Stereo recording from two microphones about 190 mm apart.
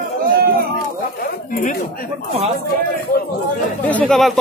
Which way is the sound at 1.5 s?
40° left (ahead or behind).